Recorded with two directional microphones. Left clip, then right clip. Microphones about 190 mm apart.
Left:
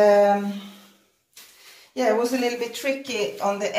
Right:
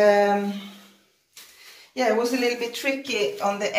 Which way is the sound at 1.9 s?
20° left (ahead or behind).